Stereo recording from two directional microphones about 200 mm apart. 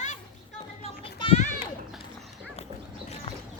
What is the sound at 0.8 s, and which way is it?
Children playing, 30° left (ahead or behind).